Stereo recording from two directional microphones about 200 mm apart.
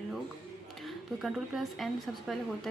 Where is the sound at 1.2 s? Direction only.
Centre (ahead or behind).